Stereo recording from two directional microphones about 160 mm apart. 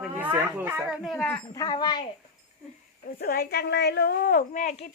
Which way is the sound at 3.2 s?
75° left (ahead or behind).